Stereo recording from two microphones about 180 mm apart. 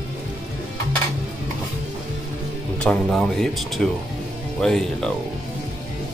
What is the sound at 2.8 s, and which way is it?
Speech, 5° left (ahead or behind).